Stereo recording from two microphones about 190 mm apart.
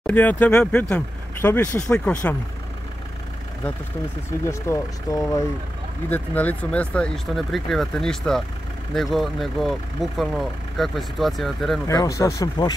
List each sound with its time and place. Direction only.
0.0 s speech: 10° left (ahead or behind)
4.5 s speech: 15° left (ahead or behind); by 11.8 s centre (ahead or behind)
11.9 s speech: 15° left (ahead or behind)